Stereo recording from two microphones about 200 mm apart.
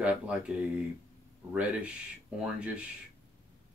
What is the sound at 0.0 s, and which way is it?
Speech, 5° right (ahead or behind).